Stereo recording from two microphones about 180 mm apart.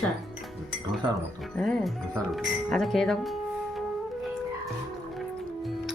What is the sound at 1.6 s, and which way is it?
Speech, 5° left (ahead or behind).